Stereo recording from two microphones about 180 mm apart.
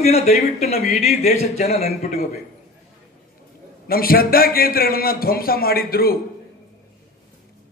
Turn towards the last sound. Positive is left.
turn(degrees=55)  # may be behind; listen again after turning